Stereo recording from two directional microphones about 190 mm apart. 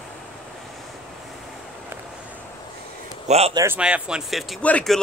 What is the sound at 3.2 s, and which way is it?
Speech, 35° right (ahead or behind).